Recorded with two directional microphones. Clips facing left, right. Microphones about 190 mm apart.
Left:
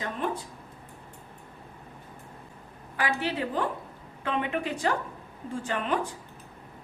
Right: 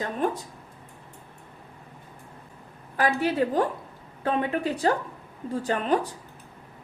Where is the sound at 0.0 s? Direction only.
45° right (ahead or behind).